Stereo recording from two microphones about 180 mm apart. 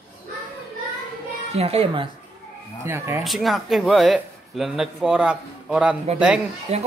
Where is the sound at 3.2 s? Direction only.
Centre (ahead or behind).